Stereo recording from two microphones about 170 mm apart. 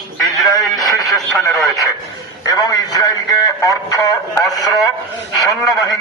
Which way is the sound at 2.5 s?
20° left (ahead or behind).